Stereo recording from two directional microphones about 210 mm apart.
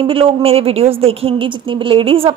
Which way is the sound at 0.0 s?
25° right (ahead or behind).